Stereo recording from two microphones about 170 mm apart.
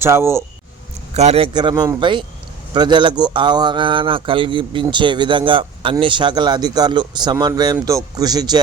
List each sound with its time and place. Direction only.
0.0 s speech: 15° right (ahead or behind)
1.1 s a man's voice: 40° right (ahead or behind)
1.5 s speech: 25° right (ahead or behind)